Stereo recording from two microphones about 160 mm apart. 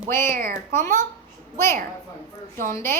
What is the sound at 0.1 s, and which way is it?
Speech, 15° left (ahead or behind).